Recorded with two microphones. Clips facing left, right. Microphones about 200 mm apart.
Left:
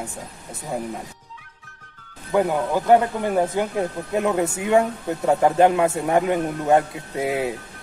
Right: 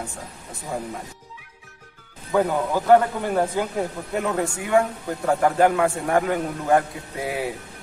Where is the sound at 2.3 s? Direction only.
15° left (ahead or behind).